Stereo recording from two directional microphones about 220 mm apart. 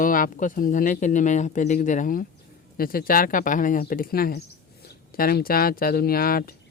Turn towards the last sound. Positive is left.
turn(degrees=40)  # may be behind; listen again after turning